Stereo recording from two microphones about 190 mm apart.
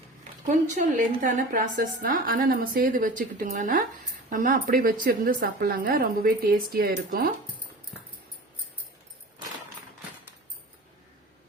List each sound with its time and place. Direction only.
0.4 s a woman's voice: 45° right (ahead or behind)